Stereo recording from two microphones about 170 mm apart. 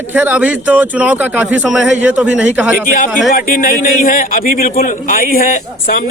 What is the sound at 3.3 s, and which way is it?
A man's voice, 55° left (ahead or behind).